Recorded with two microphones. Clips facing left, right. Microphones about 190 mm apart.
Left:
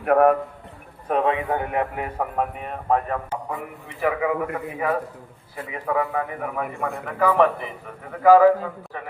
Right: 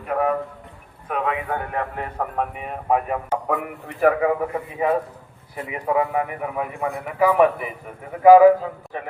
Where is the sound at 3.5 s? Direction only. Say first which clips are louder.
Right 6 dB; 65° right (ahead or behind).